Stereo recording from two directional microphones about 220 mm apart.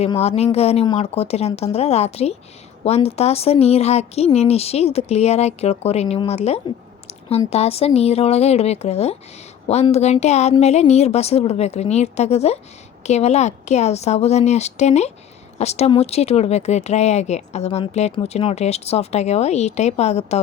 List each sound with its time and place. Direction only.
0.0 s a woman's voice: 30° left (ahead or behind)